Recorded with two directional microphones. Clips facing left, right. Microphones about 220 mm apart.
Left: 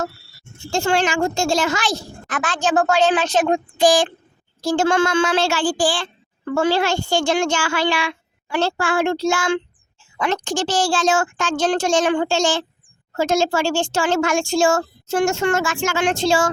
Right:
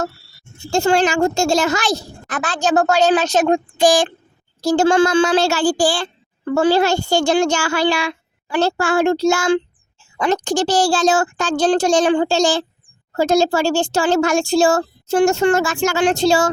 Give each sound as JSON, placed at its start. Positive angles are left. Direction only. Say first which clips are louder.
{"t": 0.7, "sound": "a woman's voice", "louder": "right 4 dB", "side_deg": -40}